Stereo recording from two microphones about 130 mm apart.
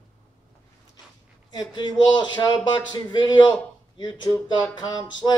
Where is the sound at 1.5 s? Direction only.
35° left (ahead or behind).